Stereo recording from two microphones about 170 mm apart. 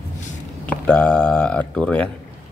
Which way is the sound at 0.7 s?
5° left (ahead or behind).